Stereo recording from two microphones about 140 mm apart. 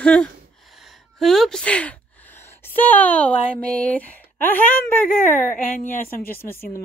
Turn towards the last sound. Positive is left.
turn(degrees=15)  # may be behind; listen again after turning